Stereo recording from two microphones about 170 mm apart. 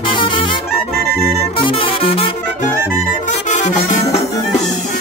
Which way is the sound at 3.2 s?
45° left (ahead or behind).